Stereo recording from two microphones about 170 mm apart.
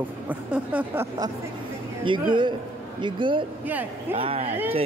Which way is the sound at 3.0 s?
30° right (ahead or behind).